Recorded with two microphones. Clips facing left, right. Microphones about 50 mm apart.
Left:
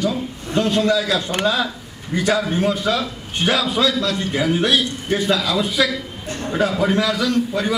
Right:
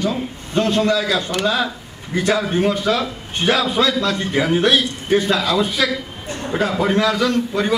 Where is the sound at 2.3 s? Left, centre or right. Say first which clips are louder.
Right 1 dB; right.